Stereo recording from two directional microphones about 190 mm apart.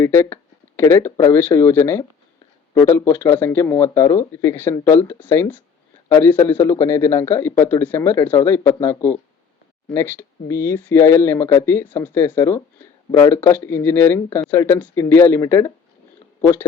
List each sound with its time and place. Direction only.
0.0 s speech: 15° left (ahead or behind)